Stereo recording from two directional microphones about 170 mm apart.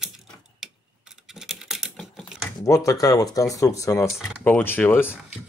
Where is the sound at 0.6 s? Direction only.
Centre (ahead or behind).